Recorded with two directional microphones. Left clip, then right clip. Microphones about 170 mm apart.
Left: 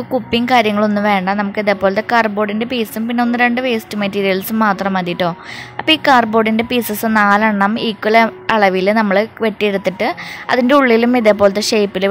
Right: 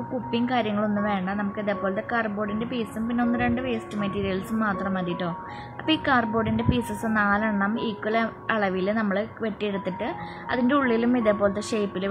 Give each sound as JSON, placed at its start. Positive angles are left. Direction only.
{"t": 0.3, "sound": "a woman's voice", "side_deg": 40}